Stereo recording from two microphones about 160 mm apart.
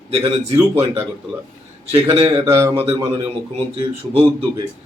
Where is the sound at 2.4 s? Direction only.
20° right (ahead or behind).